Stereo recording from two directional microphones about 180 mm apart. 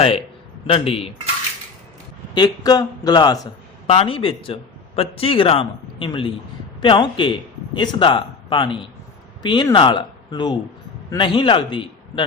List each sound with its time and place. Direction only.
0.7 s a man's voice: 30° left (ahead or behind)
2.3 s a man's voice: 20° left (ahead or behind)